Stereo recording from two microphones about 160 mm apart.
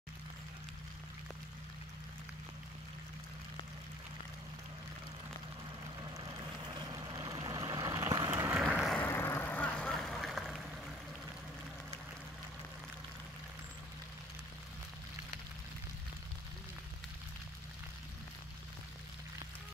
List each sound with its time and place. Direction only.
6.9 s vehicle: 25° right (ahead or behind)
8.5 s vehicle: centre (ahead or behind)